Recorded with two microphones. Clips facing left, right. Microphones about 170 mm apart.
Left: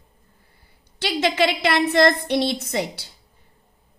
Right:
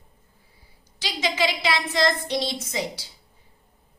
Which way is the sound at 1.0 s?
60° left (ahead or behind).